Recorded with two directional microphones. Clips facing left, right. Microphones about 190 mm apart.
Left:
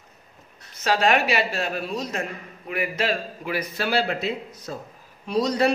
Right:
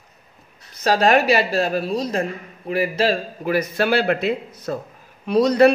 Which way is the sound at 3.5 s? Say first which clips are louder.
Right 7 dB; 50° right (ahead or behind).